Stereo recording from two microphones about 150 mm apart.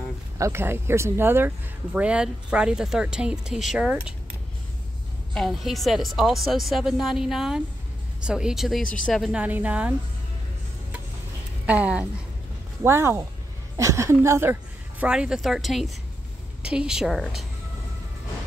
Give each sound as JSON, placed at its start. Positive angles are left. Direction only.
{"t": 0.4, "sound": "a woman's voice", "side_deg": -15}
{"t": 5.3, "sound": "a woman's voice", "side_deg": 0}
{"t": 11.6, "sound": "a woman's voice", "side_deg": -10}